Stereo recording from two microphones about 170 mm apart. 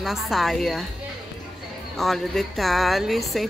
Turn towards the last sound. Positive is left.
turn(degrees=0)  # may be behind; listen again after turning